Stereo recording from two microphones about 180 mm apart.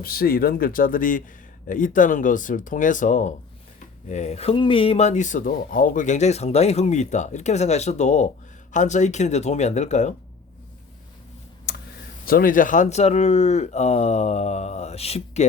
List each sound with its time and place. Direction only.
0.0 s speech: 55° left (ahead or behind); by 10.2 s 40° left (ahead or behind)
11.7 s a sound: 60° left (ahead or behind)
12.2 s speech: 55° left (ahead or behind); by 15.4 s 35° left (ahead or behind)